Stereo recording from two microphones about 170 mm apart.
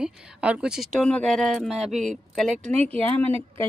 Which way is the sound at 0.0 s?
5° right (ahead or behind).